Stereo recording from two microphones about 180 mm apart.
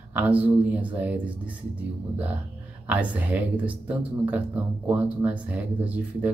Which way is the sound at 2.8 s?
10° right (ahead or behind).